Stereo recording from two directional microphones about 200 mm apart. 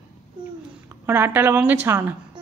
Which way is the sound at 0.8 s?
10° right (ahead or behind).